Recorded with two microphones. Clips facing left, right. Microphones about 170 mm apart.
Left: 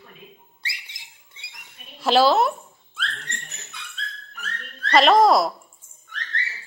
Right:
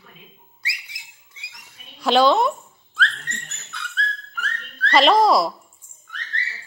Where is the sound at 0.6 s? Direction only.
25° left (ahead or behind).